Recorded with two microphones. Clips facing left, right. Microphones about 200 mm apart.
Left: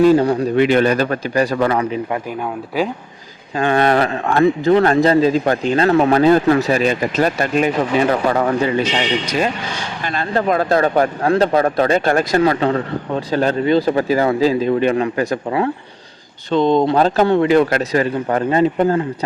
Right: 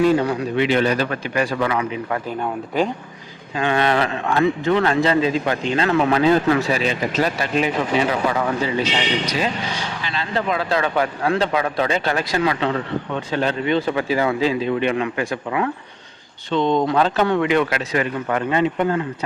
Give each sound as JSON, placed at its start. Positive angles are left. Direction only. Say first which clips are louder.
{"t": 0.0, "sound": "a man's voice", "louder": "left 5 dB", "side_deg": 35}
{"t": 2.0, "sound": "speech", "louder": "left 2 dB", "side_deg": 20}
{"t": 2.4, "sound": "speech", "louder": "right 1 dB", "side_deg": 5}
{"t": 3.5, "sound": "a man's voice", "louder": "left 4 dB", "side_deg": 45}
{"t": 10.0, "sound": "a man's voice", "louder": "left 6 dB", "side_deg": 50}